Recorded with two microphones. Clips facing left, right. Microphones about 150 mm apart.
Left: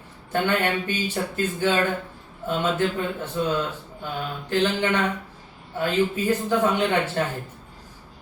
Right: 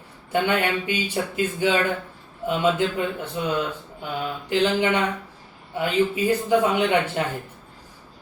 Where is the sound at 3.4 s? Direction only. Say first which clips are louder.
Left 2 dB; 15° right (ahead or behind).